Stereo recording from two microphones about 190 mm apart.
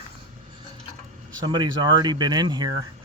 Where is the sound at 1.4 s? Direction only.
20° right (ahead or behind).